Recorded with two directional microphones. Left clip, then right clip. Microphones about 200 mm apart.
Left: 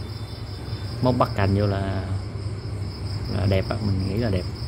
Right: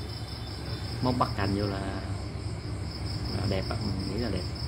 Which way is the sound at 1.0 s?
35° left (ahead or behind).